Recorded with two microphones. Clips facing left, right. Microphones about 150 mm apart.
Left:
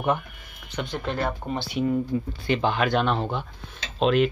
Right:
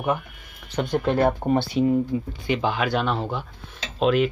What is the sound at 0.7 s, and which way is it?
Speech, 45° right (ahead or behind).